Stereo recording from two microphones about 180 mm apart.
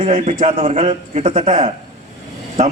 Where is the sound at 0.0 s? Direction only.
40° right (ahead or behind).